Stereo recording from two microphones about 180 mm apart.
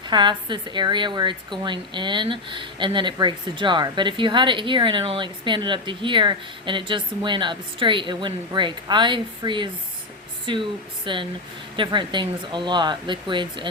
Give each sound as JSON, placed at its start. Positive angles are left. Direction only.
{"t": 0.1, "sound": "a woman's voice", "side_deg": -25}